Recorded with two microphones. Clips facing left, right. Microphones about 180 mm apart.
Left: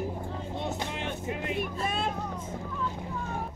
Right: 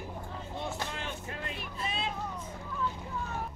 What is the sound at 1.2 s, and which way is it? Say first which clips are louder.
Speech: left 8 dB; 20° left (ahead or behind).